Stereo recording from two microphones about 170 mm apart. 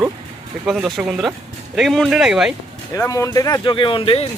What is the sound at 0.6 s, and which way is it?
Speech, 5° right (ahead or behind).